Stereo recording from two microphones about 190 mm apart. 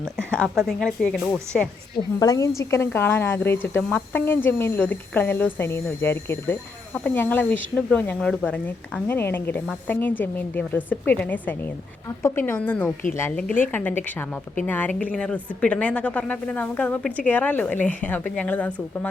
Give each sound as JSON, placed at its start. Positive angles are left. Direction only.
{"t": 0.0, "sound": "speech", "side_deg": 5}
{"t": 2.1, "sound": "a woman's voice", "side_deg": 20}